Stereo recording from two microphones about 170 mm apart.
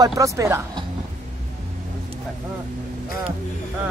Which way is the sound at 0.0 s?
20° right (ahead or behind).